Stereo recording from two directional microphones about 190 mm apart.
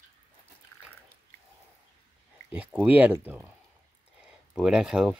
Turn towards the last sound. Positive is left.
turn(degrees=-5)  # may be behind; listen again after turning